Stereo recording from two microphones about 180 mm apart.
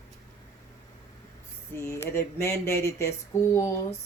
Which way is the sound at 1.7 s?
15° left (ahead or behind).